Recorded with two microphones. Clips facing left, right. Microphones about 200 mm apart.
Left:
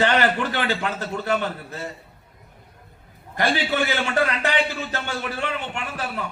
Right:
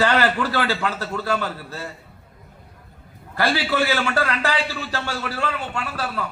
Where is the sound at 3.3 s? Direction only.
20° left (ahead or behind).